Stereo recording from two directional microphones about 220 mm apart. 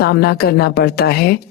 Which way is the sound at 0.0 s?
45° left (ahead or behind).